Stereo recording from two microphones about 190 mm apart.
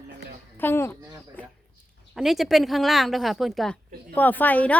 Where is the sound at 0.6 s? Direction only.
10° left (ahead or behind).